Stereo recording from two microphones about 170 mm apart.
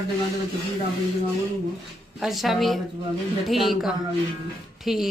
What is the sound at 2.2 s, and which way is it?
A woman's voice, centre (ahead or behind).